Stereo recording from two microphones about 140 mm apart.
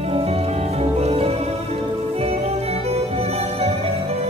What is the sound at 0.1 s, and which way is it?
Music, 45° right (ahead or behind).